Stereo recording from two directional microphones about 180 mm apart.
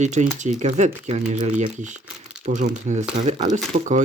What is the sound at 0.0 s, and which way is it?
Speech, 40° right (ahead or behind).